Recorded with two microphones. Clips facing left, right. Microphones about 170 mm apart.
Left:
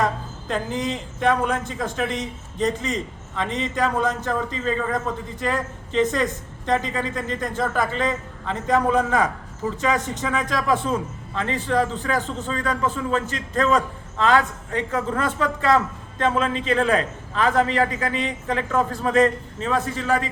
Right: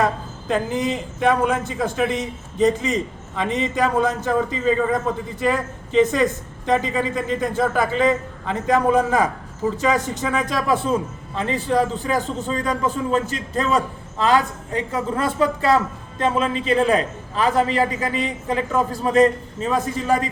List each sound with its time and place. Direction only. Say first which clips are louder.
0.0 s a man's voice: right 2 dB; 5° right (ahead or behind)
14.2 s a woman's voice: right 1 dB; 35° right (ahead or behind)
14.9 s a man's voice: right 3 dB; 10° right (ahead or behind)
17.6 s a woman's voice: right 1 dB; 35° right (ahead or behind)
18.1 s a man's voice: right 2 dB; 10° right (ahead or behind)